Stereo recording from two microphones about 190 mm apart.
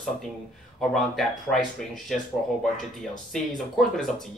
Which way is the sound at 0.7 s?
Centre (ahead or behind).